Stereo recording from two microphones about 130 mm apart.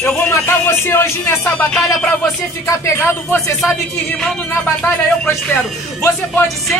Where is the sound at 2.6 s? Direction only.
20° left (ahead or behind).